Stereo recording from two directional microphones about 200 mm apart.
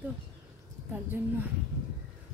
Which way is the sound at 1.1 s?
10° right (ahead or behind).